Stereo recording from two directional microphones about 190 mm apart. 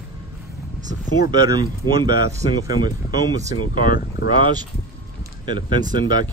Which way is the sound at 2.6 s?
20° right (ahead or behind).